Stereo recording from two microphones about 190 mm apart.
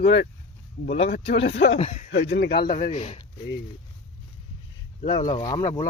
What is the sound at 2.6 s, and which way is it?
Speech, 45° left (ahead or behind).